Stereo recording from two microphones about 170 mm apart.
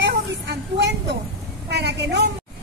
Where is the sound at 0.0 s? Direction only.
90° right.